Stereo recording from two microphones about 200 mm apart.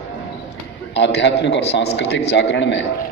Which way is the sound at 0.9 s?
60° left (ahead or behind).